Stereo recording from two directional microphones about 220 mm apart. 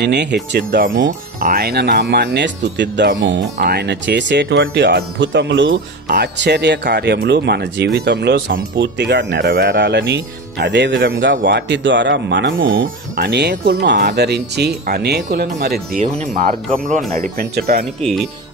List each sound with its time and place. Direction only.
0.0 s speech: 50° right (ahead or behind)
18.0 s speech: centre (ahead or behind)